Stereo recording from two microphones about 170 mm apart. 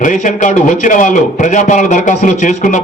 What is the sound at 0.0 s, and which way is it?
A man's voice, 50° left (ahead or behind).